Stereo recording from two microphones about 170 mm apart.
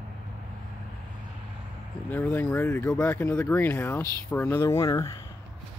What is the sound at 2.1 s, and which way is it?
Speech, 10° left (ahead or behind).